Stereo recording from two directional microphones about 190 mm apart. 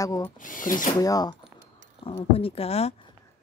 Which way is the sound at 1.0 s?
20° left (ahead or behind).